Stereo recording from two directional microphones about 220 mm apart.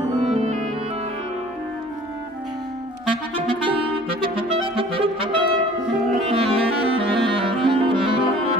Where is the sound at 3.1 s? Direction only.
25° right (ahead or behind).